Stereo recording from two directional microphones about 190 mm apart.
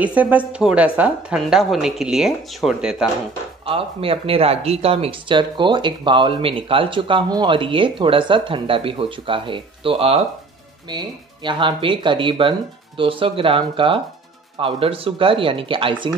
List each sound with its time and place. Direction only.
0.0 s a woman's voice: 10° right (ahead or behind)
3.6 s speech: 30° right (ahead or behind)